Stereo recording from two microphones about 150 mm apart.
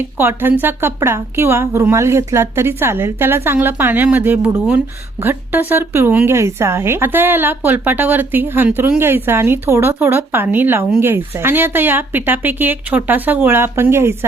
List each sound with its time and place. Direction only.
0.2 s speech: 15° right (ahead or behind)